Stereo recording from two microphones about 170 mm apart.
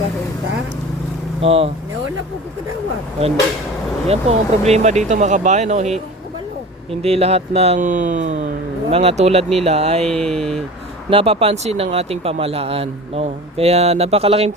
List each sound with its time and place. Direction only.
1.4 s speech: 35° right (ahead or behind)
4.1 s speech: 40° right (ahead or behind)
7.0 s speech: 35° right (ahead or behind)
10.1 s speech: 5° left (ahead or behind)
11.1 s speech: 35° right (ahead or behind)